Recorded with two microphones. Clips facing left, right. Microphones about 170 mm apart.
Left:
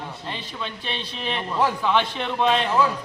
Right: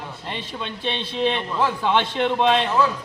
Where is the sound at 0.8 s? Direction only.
25° right (ahead or behind).